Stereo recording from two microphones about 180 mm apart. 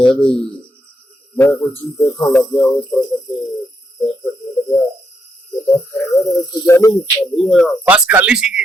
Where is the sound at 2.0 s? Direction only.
20° left (ahead or behind).